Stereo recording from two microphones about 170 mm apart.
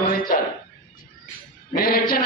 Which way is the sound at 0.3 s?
50° left (ahead or behind).